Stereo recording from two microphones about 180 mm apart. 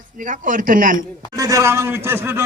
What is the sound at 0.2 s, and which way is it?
Speech, 50° right (ahead or behind).